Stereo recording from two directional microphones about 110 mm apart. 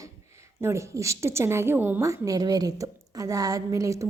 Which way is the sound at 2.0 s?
30° right (ahead or behind).